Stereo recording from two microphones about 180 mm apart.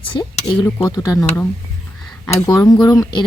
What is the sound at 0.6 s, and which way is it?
Speech, 15° left (ahead or behind).